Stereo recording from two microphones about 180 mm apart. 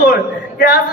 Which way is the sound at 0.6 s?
60° left (ahead or behind).